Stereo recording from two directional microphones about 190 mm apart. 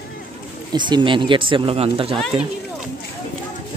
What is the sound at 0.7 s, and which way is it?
Speech, 25° right (ahead or behind).